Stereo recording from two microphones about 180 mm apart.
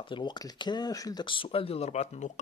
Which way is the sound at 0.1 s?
25° left (ahead or behind).